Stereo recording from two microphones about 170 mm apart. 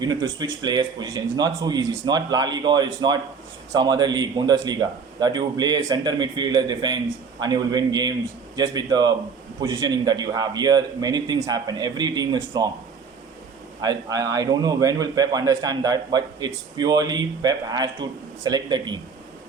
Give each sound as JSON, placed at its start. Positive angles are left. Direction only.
{"t": 0.0, "sound": "a man's voice", "side_deg": -25}
{"t": 13.8, "sound": "a man's voice", "side_deg": -20}